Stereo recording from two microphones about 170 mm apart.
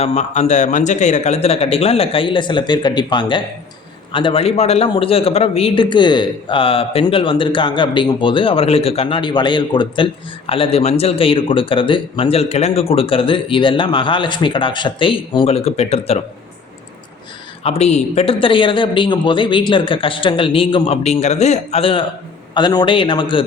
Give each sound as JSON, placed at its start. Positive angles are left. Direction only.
{"t": 0.0, "sound": "a man's voice", "side_deg": 40}
{"t": 17.6, "sound": "a man's voice", "side_deg": 40}